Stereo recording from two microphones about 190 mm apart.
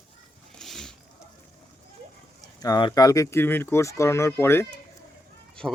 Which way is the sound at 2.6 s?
20° left (ahead or behind).